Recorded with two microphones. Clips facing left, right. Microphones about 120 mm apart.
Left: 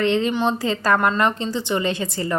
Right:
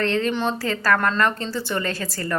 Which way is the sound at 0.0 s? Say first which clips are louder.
Left 3 dB; 15° left (ahead or behind).